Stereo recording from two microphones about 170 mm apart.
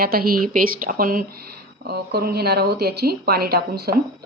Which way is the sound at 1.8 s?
70° right (ahead or behind).